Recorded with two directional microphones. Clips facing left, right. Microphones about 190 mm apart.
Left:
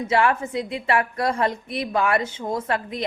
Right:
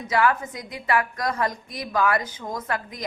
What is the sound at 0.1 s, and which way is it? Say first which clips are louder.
A woman's voice: left 1 dB; 25° left (ahead or behind).